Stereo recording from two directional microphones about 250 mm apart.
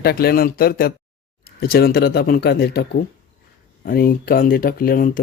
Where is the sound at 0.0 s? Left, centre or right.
Left.